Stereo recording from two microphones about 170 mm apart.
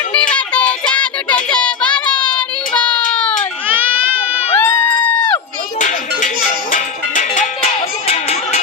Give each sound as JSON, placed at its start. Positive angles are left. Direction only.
{"t": 0.1, "sound": "child singing", "side_deg": 5}
{"t": 3.7, "sound": "baby cry", "side_deg": -10}
{"t": 4.5, "sound": "a sound", "side_deg": 10}
{"t": 5.8, "sound": "music", "side_deg": 50}